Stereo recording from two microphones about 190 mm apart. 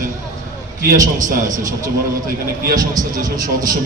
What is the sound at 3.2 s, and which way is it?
Speech, 20° right (ahead or behind).